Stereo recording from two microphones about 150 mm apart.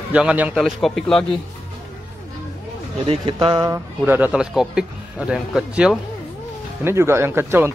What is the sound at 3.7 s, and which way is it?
A man's voice, 15° right (ahead or behind).